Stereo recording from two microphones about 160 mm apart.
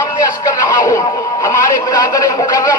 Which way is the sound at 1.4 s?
20° left (ahead or behind).